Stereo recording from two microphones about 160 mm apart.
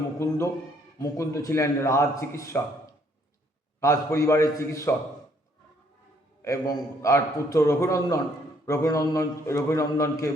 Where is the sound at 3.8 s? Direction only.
20° left (ahead or behind).